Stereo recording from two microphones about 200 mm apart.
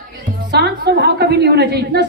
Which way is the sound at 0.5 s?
55° right (ahead or behind).